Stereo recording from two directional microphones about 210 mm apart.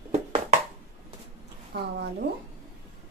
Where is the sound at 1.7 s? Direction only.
50° right (ahead or behind).